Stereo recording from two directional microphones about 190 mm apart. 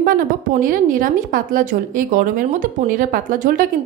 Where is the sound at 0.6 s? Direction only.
45° right (ahead or behind).